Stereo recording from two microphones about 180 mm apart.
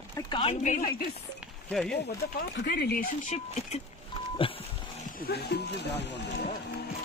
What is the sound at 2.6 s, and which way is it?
Speech, 60° left (ahead or behind).